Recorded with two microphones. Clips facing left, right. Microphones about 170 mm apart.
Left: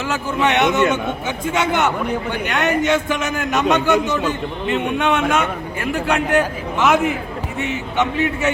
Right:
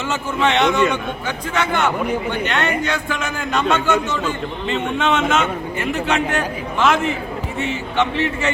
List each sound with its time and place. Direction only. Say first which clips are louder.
0.1 s a man's voice: even; 15° left (ahead or behind)
7.9 s a man's voice: left 1 dB; 5° left (ahead or behind)